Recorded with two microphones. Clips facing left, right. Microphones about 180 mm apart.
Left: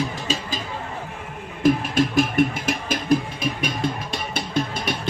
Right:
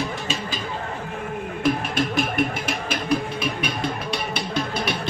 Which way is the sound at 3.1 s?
45° left (ahead or behind).